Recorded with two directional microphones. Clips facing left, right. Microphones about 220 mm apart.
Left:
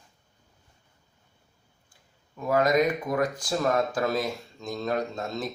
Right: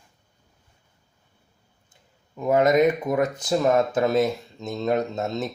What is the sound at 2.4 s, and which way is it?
Speech, 20° right (ahead or behind).